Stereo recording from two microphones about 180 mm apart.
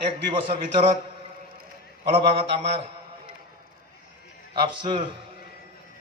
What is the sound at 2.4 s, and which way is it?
Speech, 35° right (ahead or behind).